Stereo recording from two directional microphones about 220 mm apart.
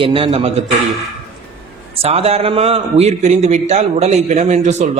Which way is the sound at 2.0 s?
25° right (ahead or behind).